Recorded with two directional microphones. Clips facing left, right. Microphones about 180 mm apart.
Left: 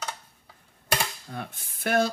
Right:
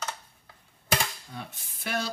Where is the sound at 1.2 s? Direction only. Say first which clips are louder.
Left 4 dB; 55° left (ahead or behind).